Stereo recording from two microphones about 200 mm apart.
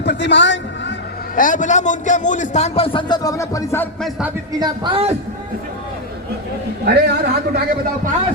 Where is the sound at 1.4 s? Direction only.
40° left (ahead or behind); by 3.8 s 15° left (ahead or behind).